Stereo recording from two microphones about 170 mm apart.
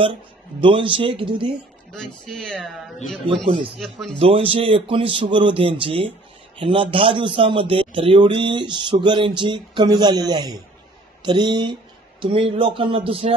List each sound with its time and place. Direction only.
0.0 s speech: 30° right (ahead or behind)
1.9 s speech: 5° left (ahead or behind)
4.2 s a man's voice: 35° right (ahead or behind)